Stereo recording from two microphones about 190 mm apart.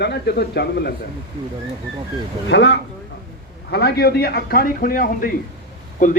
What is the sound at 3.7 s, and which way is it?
A man's voice, 55° left (ahead or behind).